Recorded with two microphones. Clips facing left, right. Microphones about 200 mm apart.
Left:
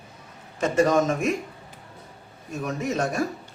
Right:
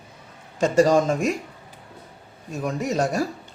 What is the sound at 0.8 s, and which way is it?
Speech, 30° right (ahead or behind).